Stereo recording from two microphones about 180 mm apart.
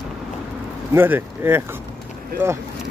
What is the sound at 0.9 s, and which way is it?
Speech, 15° right (ahead or behind).